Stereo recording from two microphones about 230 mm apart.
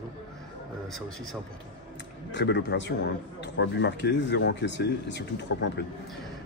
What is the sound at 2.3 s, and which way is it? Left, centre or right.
A man's voice, left.